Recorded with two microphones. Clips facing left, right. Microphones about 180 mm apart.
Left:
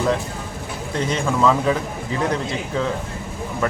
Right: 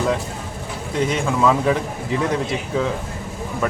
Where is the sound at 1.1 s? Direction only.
5° right (ahead or behind).